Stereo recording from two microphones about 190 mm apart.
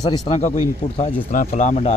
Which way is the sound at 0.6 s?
35° left (ahead or behind).